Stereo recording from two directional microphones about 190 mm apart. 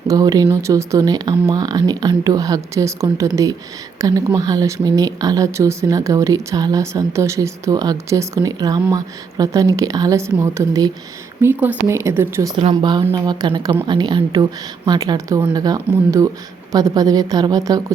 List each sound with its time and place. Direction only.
0.1 s speech: 20° right (ahead or behind)
12.5 s speech: 25° right (ahead or behind)